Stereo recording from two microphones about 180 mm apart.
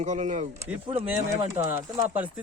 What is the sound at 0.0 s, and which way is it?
Speech, 40° right (ahead or behind).